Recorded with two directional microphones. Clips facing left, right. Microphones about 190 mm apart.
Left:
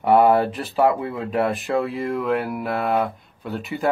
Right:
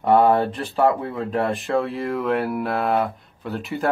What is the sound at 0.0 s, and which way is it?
Speech, 5° left (ahead or behind).